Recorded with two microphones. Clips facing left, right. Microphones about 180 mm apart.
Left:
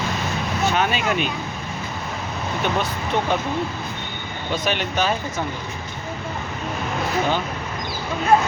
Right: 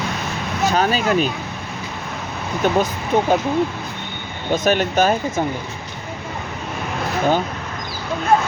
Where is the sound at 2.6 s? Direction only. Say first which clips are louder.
Right 6 dB; 45° right (ahead or behind).